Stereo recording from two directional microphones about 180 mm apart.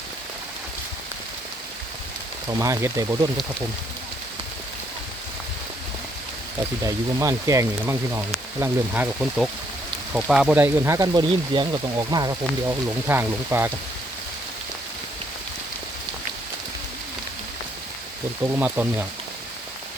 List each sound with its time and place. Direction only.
2.6 s speech: 15° right (ahead or behind)
6.8 s speech: 15° right (ahead or behind)
10.1 s speech: 5° right (ahead or behind)
18.4 s speech: 10° right (ahead or behind)